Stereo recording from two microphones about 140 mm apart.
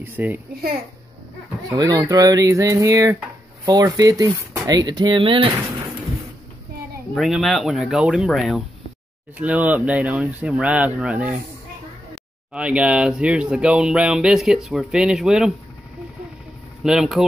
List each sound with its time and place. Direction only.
0.0 s speech: 15° right (ahead or behind)
1.7 s speech: 30° right (ahead or behind)
7.2 s speech: centre (ahead or behind)
12.5 s speech: 5° right (ahead or behind)
16.8 s speech: 5° right (ahead or behind)